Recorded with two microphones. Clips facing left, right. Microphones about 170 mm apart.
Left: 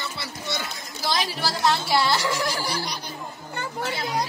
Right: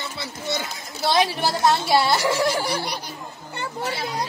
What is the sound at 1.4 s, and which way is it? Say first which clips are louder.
Speech: right 3 dB; 20° right (ahead or behind).